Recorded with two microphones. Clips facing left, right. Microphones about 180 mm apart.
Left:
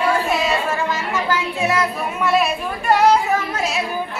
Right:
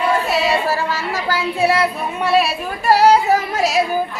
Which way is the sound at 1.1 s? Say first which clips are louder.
Right 1 dB; 35° right (ahead or behind).